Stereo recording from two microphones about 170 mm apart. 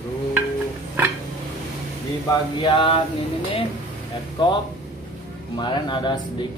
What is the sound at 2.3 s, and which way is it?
Speech, 30° left (ahead or behind).